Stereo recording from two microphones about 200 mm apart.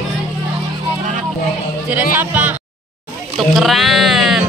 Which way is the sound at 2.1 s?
10° right (ahead or behind).